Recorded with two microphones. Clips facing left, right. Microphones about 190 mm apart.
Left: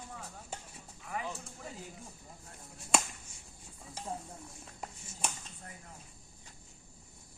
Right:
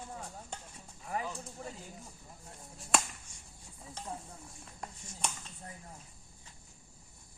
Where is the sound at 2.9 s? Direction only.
Centre (ahead or behind).